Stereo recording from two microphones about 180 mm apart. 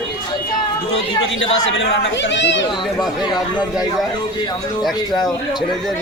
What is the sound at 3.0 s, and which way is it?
Speech, 25° left (ahead or behind).